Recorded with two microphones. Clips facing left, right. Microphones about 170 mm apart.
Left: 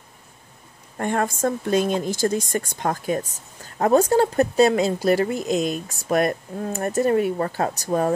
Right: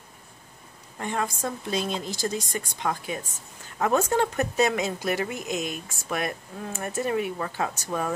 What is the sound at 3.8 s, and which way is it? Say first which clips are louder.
Speech: left 6 dB; 35° left (ahead or behind).